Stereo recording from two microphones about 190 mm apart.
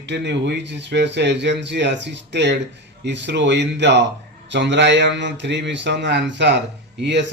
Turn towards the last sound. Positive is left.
turn(degrees=-65)  # may be behind; listen again after turning